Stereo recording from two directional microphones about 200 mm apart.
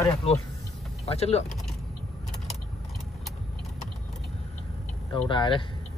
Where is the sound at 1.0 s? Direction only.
30° left (ahead or behind).